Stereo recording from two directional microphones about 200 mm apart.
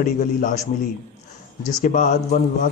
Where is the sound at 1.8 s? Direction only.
40° left (ahead or behind).